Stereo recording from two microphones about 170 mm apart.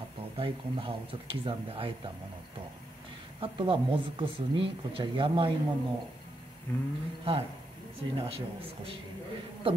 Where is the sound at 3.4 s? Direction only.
30° right (ahead or behind).